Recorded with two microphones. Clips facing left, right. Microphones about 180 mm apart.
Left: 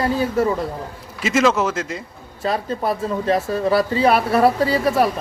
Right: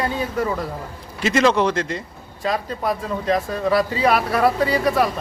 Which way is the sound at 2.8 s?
30° left (ahead or behind).